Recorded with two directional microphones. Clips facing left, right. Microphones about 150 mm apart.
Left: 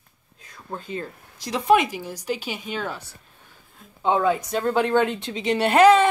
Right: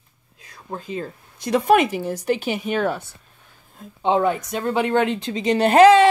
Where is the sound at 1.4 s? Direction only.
55° right (ahead or behind).